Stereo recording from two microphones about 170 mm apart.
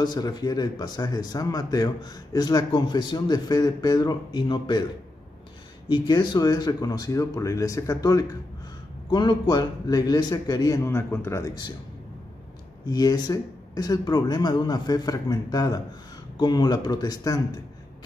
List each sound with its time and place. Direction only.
0.0 s speech: 25° left (ahead or behind)
5.9 s speech: 25° left (ahead or behind)
12.8 s speech: 25° left (ahead or behind)